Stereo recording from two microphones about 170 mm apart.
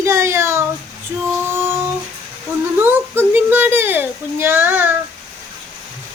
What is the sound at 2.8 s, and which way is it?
A child's voice, 10° right (ahead or behind).